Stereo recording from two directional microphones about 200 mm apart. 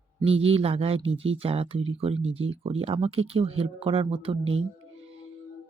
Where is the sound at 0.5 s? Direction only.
30° right (ahead or behind).